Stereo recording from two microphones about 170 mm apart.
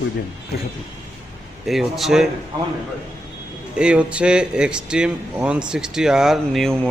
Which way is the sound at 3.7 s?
5° right (ahead or behind).